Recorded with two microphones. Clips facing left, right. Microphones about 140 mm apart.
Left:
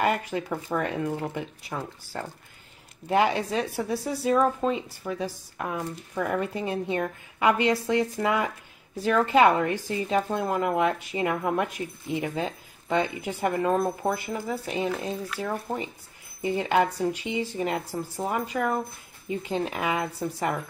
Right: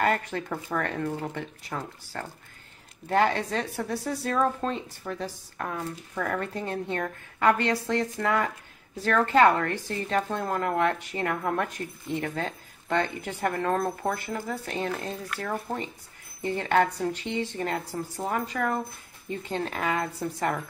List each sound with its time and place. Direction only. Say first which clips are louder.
0.0 s a woman's voice: left 1 dB; 10° left (ahead or behind)